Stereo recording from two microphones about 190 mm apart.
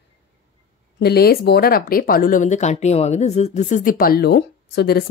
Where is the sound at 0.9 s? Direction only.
60° left (ahead or behind).